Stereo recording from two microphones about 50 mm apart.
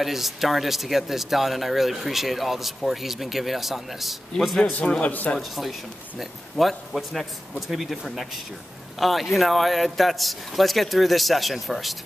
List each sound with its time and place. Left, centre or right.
0.0 s speech: centre
5.0 s speech: left
5.4 s speech: centre